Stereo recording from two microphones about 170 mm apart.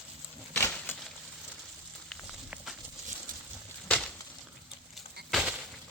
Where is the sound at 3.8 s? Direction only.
10° left (ahead or behind).